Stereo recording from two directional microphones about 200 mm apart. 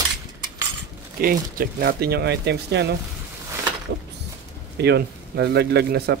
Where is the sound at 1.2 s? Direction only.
45° right (ahead or behind).